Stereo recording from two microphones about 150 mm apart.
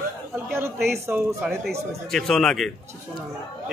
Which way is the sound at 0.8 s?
15° right (ahead or behind).